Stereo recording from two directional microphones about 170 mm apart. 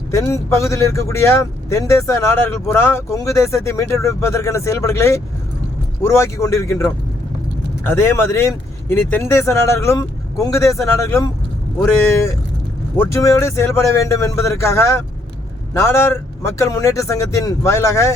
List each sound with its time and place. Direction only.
0.1 s speech: 15° left (ahead or behind)
13.0 s speech: 15° left (ahead or behind)